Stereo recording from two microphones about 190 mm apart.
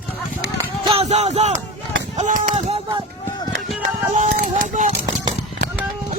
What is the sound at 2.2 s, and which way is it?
Speech, 35° right (ahead or behind).